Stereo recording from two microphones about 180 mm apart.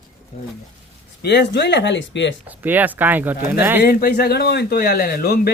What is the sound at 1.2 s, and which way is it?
Speech, 65° left (ahead or behind).